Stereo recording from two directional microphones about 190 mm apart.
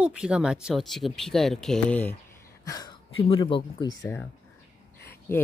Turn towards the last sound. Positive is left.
turn(degrees=10)  # may be behind; listen again after turning